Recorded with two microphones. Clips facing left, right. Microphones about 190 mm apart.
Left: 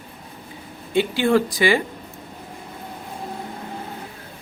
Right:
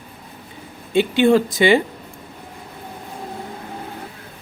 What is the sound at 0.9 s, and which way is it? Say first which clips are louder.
Speech: right 4 dB; 20° right (ahead or behind).